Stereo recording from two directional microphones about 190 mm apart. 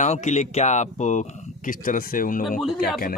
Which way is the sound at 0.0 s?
40° left (ahead or behind).